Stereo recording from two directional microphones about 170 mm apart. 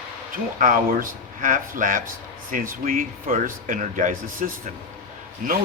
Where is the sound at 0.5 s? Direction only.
55° right (ahead or behind).